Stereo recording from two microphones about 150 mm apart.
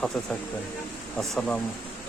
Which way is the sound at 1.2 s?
5° left (ahead or behind).